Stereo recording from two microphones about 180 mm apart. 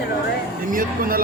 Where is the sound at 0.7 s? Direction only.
50° right (ahead or behind).